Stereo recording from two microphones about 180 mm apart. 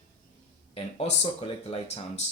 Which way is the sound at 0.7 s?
35° left (ahead or behind).